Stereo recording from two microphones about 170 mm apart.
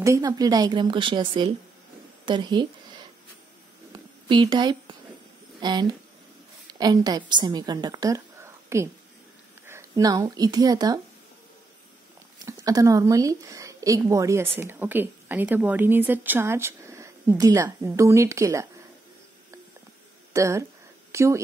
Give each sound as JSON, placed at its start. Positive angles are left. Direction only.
{"t": 0.0, "sound": "speech", "side_deg": -20}
{"t": 2.2, "sound": "a sound", "side_deg": -25}
{"t": 5.6, "sound": "a woman's voice", "side_deg": -25}
{"t": 12.4, "sound": "a woman's voice", "side_deg": -20}
{"t": 20.3, "sound": "a woman's voice", "side_deg": -15}